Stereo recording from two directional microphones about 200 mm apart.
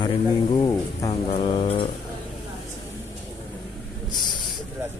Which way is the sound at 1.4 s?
30° left (ahead or behind).